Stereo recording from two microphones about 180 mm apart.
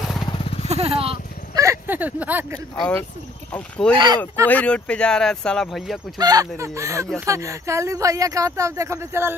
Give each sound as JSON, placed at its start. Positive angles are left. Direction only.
{"t": 0.2, "sound": "vehicle", "side_deg": 30}
{"t": 0.7, "sound": "vehicle", "side_deg": -35}
{"t": 1.5, "sound": "a sound", "side_deg": -15}
{"t": 2.7, "sound": "speech", "side_deg": 15}
{"t": 3.9, "sound": "speech", "side_deg": -25}
{"t": 4.5, "sound": "speech", "side_deg": 10}
{"t": 6.1, "sound": "speech", "side_deg": -20}